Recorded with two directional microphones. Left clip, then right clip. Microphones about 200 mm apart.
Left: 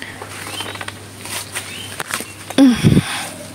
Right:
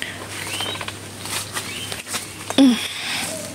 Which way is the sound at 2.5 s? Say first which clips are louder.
Left 4 dB; 20° left (ahead or behind).